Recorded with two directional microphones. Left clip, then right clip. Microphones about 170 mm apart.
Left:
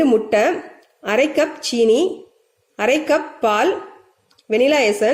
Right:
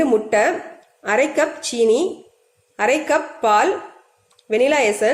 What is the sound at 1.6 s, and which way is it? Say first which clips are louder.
Speech: left 2 dB; centre (ahead or behind).